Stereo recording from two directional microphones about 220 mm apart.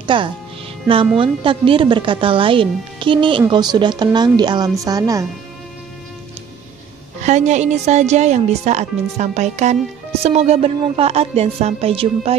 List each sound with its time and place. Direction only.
0.0 s a woman's voice: 20° right (ahead or behind)
7.2 s a woman's voice: 30° right (ahead or behind)